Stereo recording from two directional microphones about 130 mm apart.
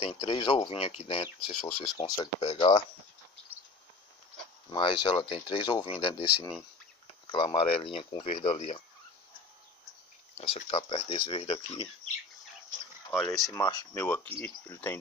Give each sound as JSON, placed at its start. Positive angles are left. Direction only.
{"t": 0.0, "sound": "speech", "side_deg": 40}
{"t": 2.0, "sound": "speech", "side_deg": 30}
{"t": 2.4, "sound": "speech", "side_deg": 45}
{"t": 4.6, "sound": "speech", "side_deg": 40}
{"t": 10.7, "sound": "speech", "side_deg": 45}
{"t": 13.1, "sound": "speech", "side_deg": 5}
{"t": 13.5, "sound": "speech", "side_deg": 30}
{"t": 13.9, "sound": "speech", "side_deg": 15}